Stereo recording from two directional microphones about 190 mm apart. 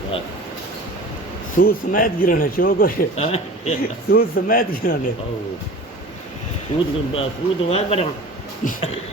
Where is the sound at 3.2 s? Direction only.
35° left (ahead or behind).